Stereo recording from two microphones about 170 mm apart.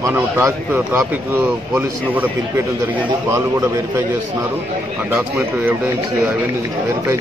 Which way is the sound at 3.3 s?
15° right (ahead or behind).